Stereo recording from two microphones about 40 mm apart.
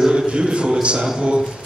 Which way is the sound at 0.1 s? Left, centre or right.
Right.